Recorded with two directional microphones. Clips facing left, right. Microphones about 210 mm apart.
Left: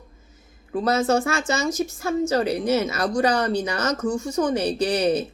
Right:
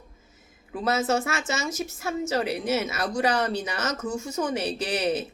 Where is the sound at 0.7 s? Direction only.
5° right (ahead or behind).